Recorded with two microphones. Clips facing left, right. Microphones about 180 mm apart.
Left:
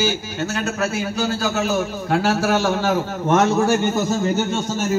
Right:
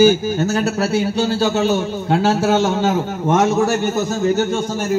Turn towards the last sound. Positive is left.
turn(degrees=-20)  # may be behind; listen again after turning